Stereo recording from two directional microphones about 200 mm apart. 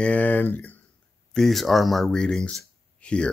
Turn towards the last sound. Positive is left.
turn(degrees=5)  # may be behind; listen again after turning